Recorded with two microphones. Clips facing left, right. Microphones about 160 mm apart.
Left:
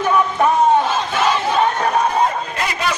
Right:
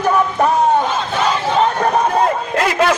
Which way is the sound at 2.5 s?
80° right.